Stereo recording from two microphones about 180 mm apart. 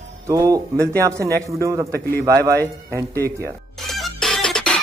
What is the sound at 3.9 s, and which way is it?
Music, centre (ahead or behind).